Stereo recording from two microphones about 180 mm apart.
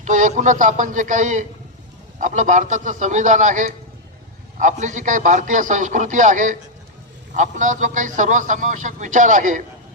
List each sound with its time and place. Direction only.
0.0 s a man's voice: 45° right (ahead or behind)